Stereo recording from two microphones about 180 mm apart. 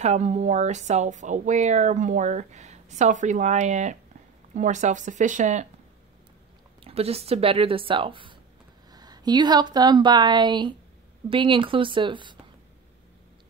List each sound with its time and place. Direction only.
0.0 s speech: 40° right (ahead or behind)
6.8 s speech: 35° right (ahead or behind)